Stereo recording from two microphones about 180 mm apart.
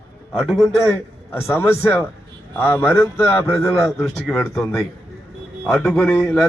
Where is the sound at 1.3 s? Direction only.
10° left (ahead or behind).